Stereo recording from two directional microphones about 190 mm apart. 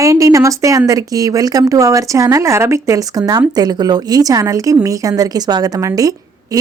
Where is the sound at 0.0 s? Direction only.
15° right (ahead or behind).